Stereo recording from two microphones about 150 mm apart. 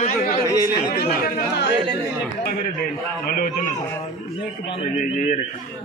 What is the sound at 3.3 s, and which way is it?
Speech, 70° left (ahead or behind).